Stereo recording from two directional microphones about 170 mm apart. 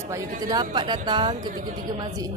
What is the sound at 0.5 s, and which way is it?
Music, 25° right (ahead or behind).